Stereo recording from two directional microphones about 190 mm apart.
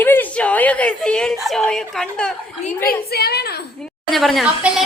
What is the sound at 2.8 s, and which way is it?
Speech, 55° left (ahead or behind).